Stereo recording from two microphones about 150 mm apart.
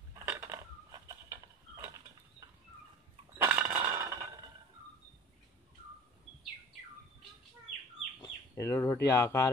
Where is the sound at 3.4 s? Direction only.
15° right (ahead or behind).